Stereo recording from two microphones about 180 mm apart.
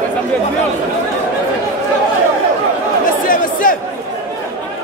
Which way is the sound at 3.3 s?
50° left (ahead or behind).